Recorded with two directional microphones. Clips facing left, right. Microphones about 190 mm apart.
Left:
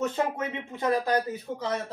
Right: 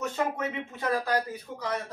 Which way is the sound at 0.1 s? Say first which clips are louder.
Left 1 dB; 20° left (ahead or behind).